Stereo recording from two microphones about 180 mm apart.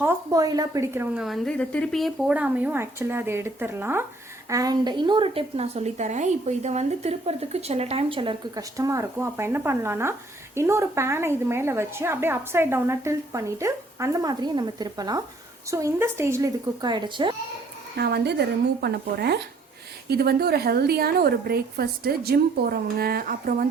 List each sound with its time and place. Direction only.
0.0 s a woman's voice: 15° right (ahead or behind)
17.9 s a woman's voice: 65° right (ahead or behind)